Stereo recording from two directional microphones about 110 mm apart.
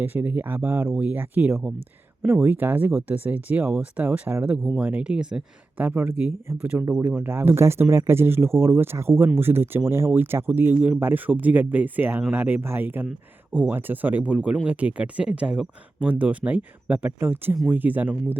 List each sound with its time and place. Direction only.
0.0 s speech: 15° right (ahead or behind)